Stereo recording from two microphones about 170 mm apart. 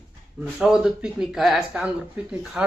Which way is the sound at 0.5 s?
5° right (ahead or behind).